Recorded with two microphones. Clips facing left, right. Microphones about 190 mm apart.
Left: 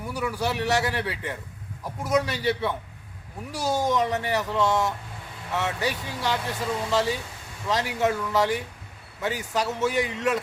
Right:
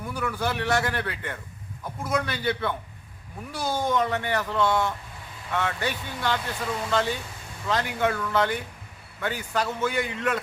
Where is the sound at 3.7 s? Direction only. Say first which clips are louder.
Left 2 dB; 40° left (ahead or behind).